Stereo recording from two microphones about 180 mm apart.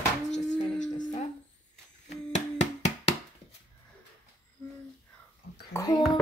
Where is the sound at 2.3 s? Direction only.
40° left (ahead or behind).